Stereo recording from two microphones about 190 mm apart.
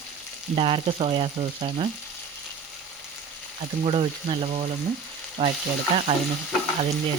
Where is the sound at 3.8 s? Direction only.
30° right (ahead or behind).